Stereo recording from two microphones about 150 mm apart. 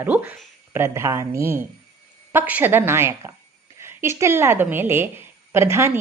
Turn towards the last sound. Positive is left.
turn(degrees=-20)  # may be behind; listen again after turning